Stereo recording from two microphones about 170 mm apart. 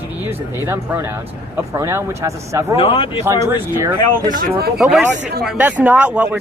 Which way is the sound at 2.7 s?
35° left (ahead or behind).